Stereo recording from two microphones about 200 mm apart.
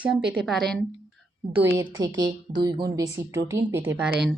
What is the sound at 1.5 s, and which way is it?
A woman's voice, 15° right (ahead or behind).